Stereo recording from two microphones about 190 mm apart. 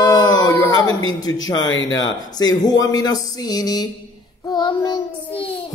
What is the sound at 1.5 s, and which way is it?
Speech, 90° left.